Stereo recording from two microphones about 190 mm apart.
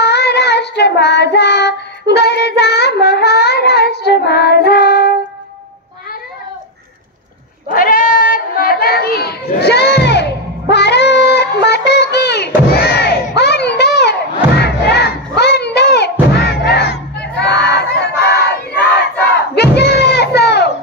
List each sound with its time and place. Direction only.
0.0 s child singing: 60° left (ahead or behind)
7.7 s a sound: 50° left (ahead or behind)
14.6 s crowd: 60° left (ahead or behind)
19.5 s crowd: 60° left (ahead or behind)